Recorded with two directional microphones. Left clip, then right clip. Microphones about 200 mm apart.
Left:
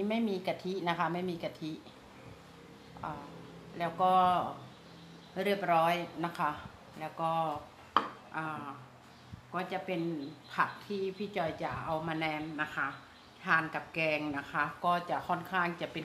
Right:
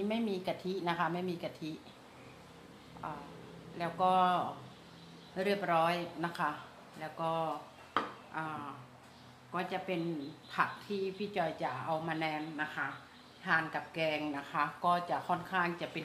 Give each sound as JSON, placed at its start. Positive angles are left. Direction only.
{"t": 0.1, "sound": "a woman's voice", "side_deg": 5}
{"t": 3.0, "sound": "a woman's voice", "side_deg": 10}
{"t": 7.9, "sound": "a sound", "side_deg": 10}
{"t": 9.5, "sound": "a woman's voice", "side_deg": 5}